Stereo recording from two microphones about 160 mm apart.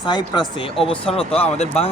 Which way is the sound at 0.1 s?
30° left (ahead or behind).